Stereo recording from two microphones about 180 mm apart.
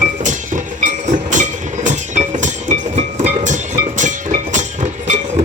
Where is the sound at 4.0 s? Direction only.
45° right (ahead or behind).